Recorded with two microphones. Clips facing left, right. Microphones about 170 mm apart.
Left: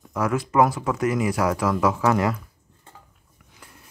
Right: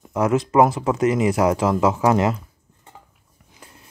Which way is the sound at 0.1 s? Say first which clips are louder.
Right 5 dB; 20° right (ahead or behind).